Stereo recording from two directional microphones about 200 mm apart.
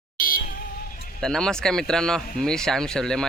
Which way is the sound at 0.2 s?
45° left (ahead or behind).